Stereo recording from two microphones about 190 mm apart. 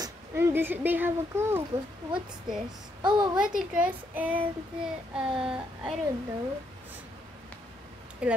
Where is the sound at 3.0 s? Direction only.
25° right (ahead or behind).